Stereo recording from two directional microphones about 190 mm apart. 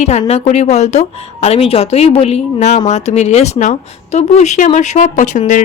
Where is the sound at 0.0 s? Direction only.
35° left (ahead or behind).